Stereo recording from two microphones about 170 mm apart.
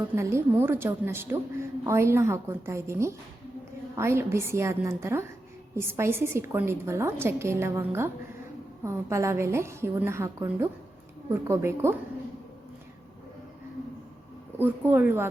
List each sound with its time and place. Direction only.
0.2 s a woman's voice: 15° right (ahead or behind)
14.6 s a woman's voice: 10° right (ahead or behind)